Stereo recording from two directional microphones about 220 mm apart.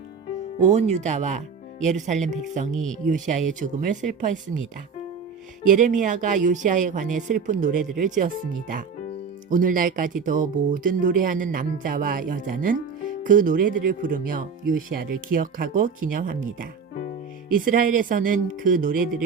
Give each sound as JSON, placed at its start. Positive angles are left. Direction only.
{"t": 0.6, "sound": "speech", "side_deg": -30}
{"t": 5.6, "sound": "speech", "side_deg": -35}